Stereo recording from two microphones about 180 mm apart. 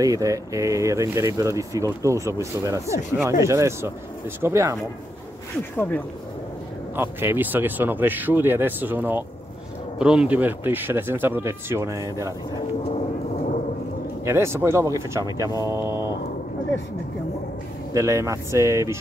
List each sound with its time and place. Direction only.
0.0 s speech: 20° right (ahead or behind)
5.8 s speech: 10° left (ahead or behind)
7.0 s speech: 10° right (ahead or behind)
14.2 s speech: 15° right (ahead or behind)
17.9 s speech: 15° right (ahead or behind)